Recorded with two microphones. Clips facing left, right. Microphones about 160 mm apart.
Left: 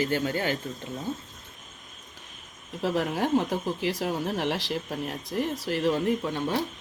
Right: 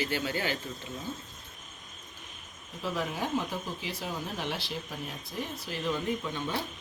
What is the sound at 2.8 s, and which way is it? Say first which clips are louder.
Speech: left 6 dB; 85° left.